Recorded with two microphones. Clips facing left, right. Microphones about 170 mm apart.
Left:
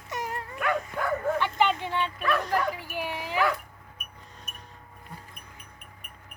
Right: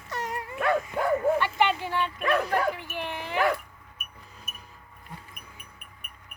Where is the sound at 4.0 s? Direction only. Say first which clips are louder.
Right 1 dB; 5° right (ahead or behind).